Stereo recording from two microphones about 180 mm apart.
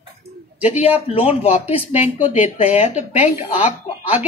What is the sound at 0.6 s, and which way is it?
Speech, 40° left (ahead or behind).